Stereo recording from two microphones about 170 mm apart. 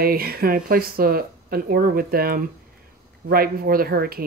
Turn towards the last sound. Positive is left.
turn(degrees=-60)  # may be behind; listen again after turning